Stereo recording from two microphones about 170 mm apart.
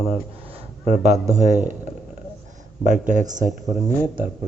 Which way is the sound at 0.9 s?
45° right (ahead or behind).